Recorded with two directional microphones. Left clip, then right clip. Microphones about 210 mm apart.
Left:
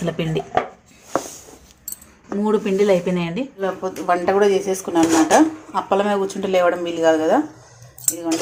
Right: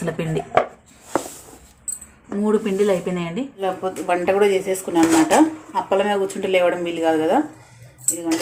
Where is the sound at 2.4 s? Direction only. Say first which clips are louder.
Left 1 dB; 10° left (ahead or behind).